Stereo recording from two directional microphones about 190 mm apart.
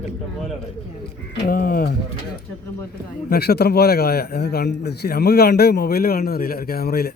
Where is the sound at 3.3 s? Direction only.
55° left (ahead or behind).